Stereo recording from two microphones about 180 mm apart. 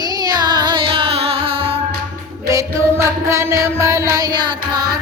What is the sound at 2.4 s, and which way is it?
Music, 15° right (ahead or behind).